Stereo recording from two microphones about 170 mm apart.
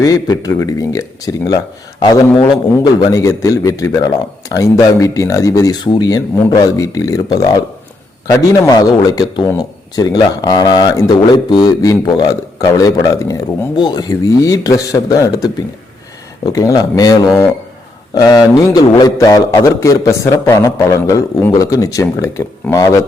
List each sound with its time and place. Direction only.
0.0 s speech: 20° left (ahead or behind)
16.5 s speech: 20° left (ahead or behind)